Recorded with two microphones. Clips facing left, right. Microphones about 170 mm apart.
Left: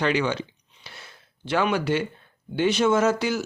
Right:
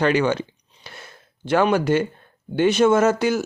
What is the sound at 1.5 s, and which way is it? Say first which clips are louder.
Speech: right 5 dB; 45° right (ahead or behind).